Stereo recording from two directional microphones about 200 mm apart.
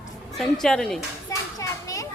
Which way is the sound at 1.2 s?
15° left (ahead or behind).